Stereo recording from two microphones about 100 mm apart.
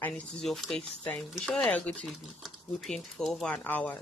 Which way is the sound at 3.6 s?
15° left (ahead or behind).